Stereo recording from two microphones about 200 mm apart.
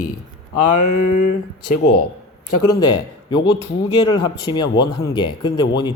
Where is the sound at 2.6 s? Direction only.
20° left (ahead or behind).